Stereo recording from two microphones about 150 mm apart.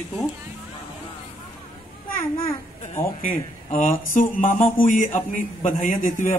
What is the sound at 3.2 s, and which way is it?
A man's voice, 65° left (ahead or behind).